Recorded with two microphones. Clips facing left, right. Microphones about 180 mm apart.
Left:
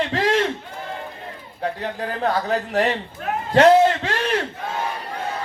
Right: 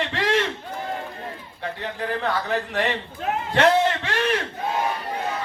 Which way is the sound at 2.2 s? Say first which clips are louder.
Left 5 dB; 40° left (ahead or behind).